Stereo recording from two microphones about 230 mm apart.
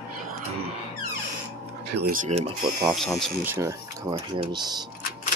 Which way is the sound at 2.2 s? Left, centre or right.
Right.